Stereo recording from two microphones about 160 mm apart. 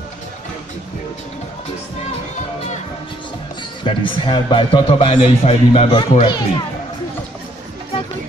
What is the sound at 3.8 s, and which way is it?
A man's voice, 30° left (ahead or behind).